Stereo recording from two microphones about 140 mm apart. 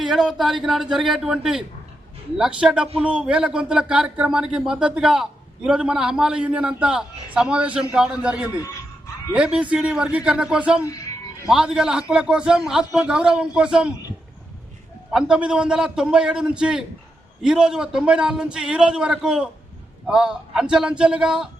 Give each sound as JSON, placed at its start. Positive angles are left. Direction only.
{"t": 0.0, "sound": "a man's voice", "side_deg": 0}
{"t": 8.5, "sound": "a man's voice", "side_deg": 25}
{"t": 9.3, "sound": "a man's voice", "side_deg": -10}
{"t": 15.1, "sound": "a man's voice", "side_deg": -5}